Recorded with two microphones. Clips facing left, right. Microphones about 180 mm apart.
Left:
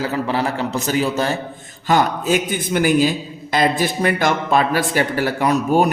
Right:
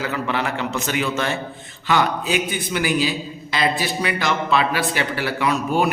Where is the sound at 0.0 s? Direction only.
35° left (ahead or behind).